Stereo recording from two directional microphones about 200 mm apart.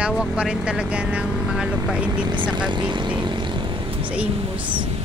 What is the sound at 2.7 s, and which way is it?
Vehicle, 25° right (ahead or behind).